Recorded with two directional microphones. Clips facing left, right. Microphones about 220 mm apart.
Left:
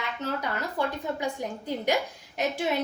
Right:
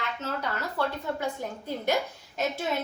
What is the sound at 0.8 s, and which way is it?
A woman's voice, 15° left (ahead or behind).